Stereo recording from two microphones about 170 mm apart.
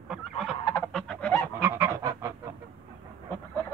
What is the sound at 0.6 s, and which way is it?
Goose, 15° left (ahead or behind).